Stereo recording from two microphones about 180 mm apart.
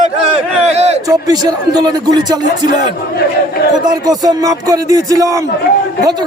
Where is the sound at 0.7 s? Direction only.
35° right (ahead or behind).